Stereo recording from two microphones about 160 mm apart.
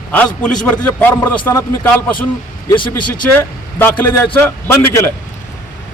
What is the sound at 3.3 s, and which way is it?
A man's voice, 15° left (ahead or behind).